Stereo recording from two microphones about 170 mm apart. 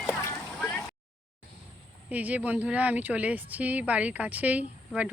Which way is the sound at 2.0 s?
10° right (ahead or behind).